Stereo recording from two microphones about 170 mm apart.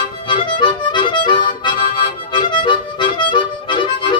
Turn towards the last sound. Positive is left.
turn(degrees=30)  # may be behind; listen again after turning